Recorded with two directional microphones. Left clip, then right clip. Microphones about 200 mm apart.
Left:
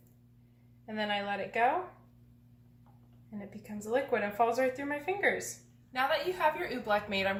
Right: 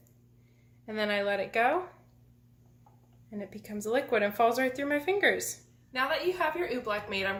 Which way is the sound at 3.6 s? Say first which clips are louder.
Right 2 dB; 50° right (ahead or behind).